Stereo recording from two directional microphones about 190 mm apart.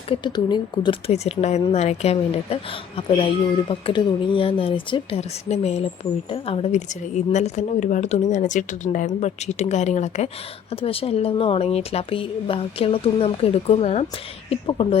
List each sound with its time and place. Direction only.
0.1 s a woman's voice: 25° left (ahead or behind)
3.7 s a woman's voice: 25° left (ahead or behind)